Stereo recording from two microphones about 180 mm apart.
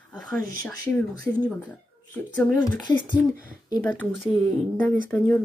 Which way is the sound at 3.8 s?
5° left (ahead or behind).